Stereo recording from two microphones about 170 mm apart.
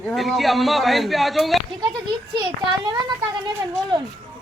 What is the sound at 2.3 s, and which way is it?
Speech, 25° right (ahead or behind).